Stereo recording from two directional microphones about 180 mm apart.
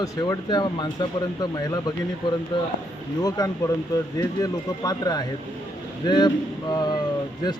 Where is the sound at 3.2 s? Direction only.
20° left (ahead or behind).